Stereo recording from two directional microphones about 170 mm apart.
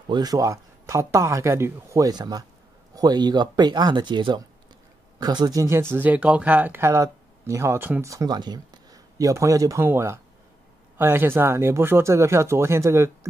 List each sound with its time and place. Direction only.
0.1 s speech: 20° right (ahead or behind)